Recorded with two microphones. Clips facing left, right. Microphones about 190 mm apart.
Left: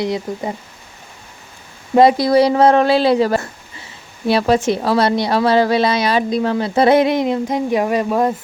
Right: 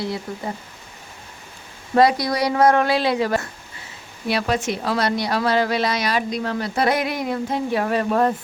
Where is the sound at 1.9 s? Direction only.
25° left (ahead or behind).